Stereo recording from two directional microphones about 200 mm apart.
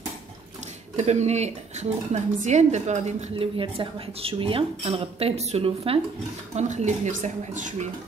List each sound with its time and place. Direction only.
0.9 s speech: 35° right (ahead or behind)